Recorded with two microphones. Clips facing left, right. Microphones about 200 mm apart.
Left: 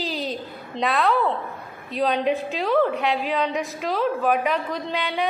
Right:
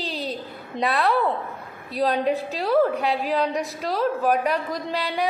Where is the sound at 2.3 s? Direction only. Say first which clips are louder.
Even; 35° right (ahead or behind).